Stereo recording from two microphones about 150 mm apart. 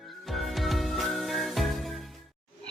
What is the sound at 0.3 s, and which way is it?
Music, centre (ahead or behind).